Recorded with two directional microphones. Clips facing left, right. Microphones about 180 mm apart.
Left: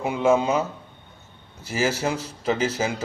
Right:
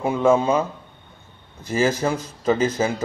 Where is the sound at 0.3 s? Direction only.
30° right (ahead or behind).